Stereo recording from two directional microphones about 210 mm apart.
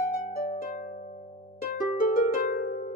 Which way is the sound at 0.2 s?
45° left (ahead or behind).